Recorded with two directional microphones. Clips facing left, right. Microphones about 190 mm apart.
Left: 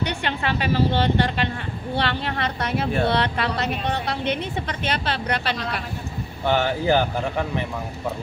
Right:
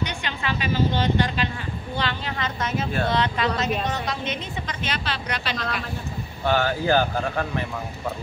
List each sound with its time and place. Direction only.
0.0 s a woman's voice: 65° left (ahead or behind)
6.4 s speech: 20° left (ahead or behind)